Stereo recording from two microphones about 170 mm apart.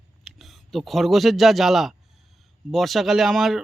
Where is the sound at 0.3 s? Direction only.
Centre (ahead or behind).